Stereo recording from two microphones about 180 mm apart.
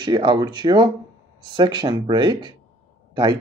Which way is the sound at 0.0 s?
25° right (ahead or behind).